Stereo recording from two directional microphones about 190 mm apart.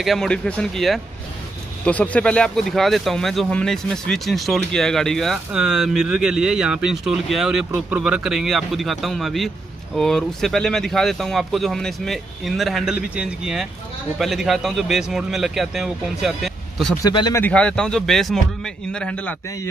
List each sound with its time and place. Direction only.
0.0 s speech: centre (ahead or behind)
17.0 s speech: 20° left (ahead or behind)
17.4 s speech: 5° left (ahead or behind)